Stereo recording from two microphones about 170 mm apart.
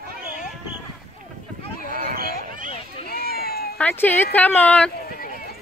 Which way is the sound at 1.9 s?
55° right (ahead or behind).